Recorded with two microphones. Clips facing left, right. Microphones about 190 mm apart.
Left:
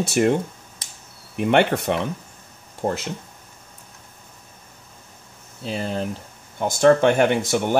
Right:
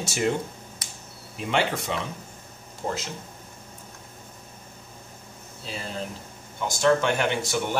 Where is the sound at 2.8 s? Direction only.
45° left (ahead or behind).